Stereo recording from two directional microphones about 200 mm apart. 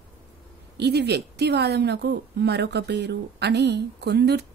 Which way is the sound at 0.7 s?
55° right (ahead or behind).